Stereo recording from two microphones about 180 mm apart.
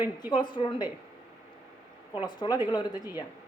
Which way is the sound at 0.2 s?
25° left (ahead or behind).